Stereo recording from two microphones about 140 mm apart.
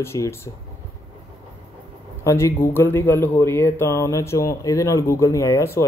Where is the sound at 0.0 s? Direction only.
20° left (ahead or behind).